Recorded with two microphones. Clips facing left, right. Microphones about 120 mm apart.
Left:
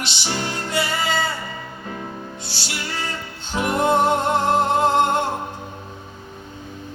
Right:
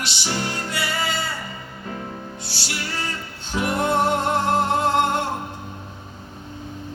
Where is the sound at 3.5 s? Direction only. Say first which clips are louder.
Left 3 dB; 20° left (ahead or behind).